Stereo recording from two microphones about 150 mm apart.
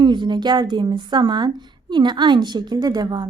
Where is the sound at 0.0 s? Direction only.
30° right (ahead or behind).